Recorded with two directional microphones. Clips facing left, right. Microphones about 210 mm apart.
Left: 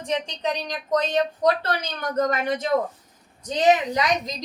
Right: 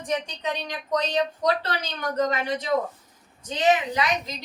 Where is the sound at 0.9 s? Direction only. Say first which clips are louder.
Left 2 dB; 45° left (ahead or behind).